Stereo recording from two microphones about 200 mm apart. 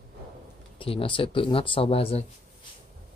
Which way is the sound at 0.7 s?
25° left (ahead or behind).